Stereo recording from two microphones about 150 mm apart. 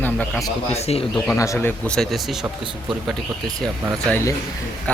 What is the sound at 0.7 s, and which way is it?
Speech, 45° left (ahead or behind).